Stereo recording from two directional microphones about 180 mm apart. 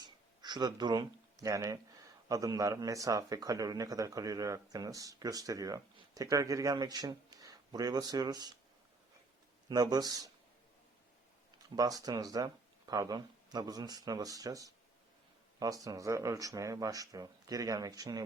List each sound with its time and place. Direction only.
0.0 s a sound: 25° right (ahead or behind)
2.3 s speech: 20° right (ahead or behind)
9.6 s speech: 20° right (ahead or behind)
11.8 s speech: 20° right (ahead or behind)